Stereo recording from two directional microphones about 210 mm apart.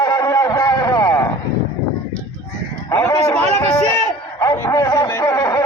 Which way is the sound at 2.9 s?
15° left (ahead or behind).